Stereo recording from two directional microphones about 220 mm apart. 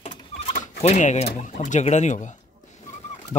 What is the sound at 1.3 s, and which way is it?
Speech, 35° left (ahead or behind).